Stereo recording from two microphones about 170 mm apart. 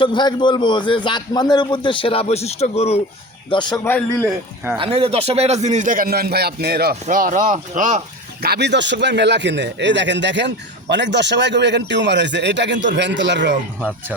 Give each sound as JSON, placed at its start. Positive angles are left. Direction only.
{"t": 0.0, "sound": "a man's voice", "side_deg": 25}
{"t": 3.5, "sound": "a man's voice", "side_deg": 25}
{"t": 3.8, "sound": "a man's voice", "side_deg": 10}
{"t": 4.8, "sound": "speech", "side_deg": -35}
{"t": 8.4, "sound": "speech", "side_deg": -70}